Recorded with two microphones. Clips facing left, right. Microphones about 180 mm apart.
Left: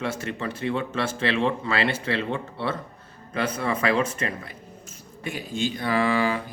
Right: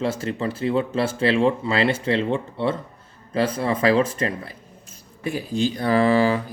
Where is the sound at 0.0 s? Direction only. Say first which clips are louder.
Right 5 dB; 30° right (ahead or behind).